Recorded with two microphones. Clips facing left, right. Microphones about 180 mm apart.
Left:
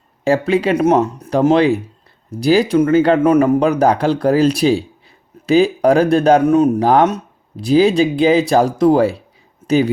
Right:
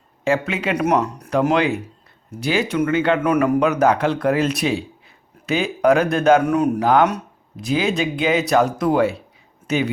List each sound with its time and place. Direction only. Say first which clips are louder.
0.3 s speech: left 6 dB; 35° left (ahead or behind)